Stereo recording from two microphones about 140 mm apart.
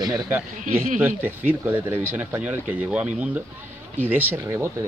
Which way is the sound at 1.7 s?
15° right (ahead or behind).